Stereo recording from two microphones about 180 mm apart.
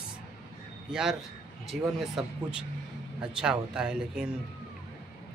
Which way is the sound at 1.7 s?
Centre (ahead or behind).